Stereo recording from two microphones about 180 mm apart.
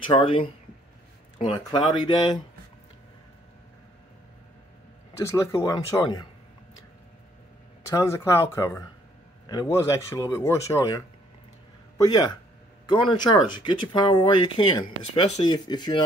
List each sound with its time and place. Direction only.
0.0 s speech: 25° left (ahead or behind)
5.1 s speech: 15° left (ahead or behind)
7.9 s speech: 15° left (ahead or behind)
15.1 s speech: 40° left (ahead or behind)
15.4 s speech: 25° left (ahead or behind)